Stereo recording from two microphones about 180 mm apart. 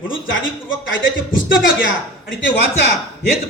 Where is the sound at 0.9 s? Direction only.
90° left.